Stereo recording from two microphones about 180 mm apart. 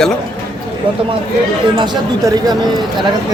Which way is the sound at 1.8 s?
20° right (ahead or behind).